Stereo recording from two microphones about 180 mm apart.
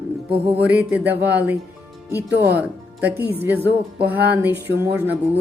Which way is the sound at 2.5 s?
10° right (ahead or behind).